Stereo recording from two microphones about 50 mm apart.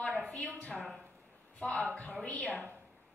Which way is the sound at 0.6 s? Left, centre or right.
Centre.